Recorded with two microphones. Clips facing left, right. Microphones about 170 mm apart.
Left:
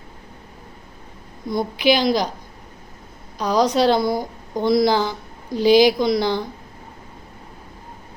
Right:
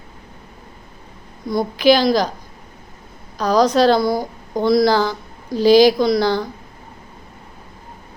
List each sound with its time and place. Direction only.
1.5 s a woman's voice: 20° left (ahead or behind)
3.3 s a woman's voice: 15° left (ahead or behind)